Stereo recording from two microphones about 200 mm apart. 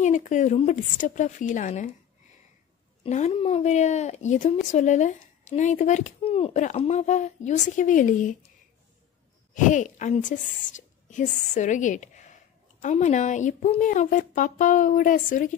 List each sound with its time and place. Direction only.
0.0 s speech: 40° left (ahead or behind)
3.0 s speech: 35° left (ahead or behind)
9.5 s a woman's voice: 40° left (ahead or behind)